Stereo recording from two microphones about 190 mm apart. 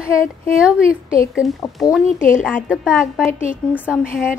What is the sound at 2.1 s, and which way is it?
Speech, 45° left (ahead or behind).